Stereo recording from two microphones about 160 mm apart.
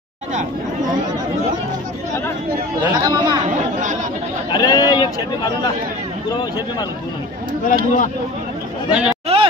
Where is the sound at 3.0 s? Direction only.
25° right (ahead or behind).